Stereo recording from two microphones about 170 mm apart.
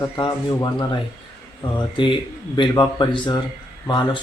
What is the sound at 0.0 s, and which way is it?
Speech, 25° left (ahead or behind).